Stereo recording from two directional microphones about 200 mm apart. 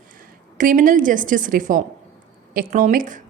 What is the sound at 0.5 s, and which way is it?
A woman's voice, 40° right (ahead or behind).